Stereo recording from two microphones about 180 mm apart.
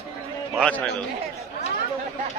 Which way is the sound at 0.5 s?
5° left (ahead or behind).